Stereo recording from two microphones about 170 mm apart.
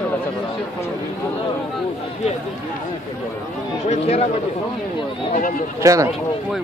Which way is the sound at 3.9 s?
40° left (ahead or behind).